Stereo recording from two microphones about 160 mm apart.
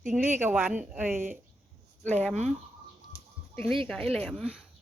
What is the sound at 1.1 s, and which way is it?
Speech, 50° right (ahead or behind).